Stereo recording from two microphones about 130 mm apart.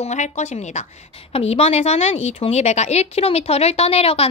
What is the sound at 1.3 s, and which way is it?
A woman's voice, 50° left (ahead or behind).